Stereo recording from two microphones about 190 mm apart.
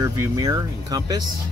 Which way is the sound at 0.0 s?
20° right (ahead or behind).